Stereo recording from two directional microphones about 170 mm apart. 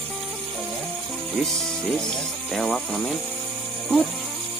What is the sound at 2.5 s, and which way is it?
Speech, 5° left (ahead or behind).